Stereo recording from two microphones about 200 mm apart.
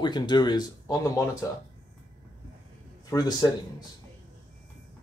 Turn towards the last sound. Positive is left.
turn(degrees=20)  # may be behind; listen again after turning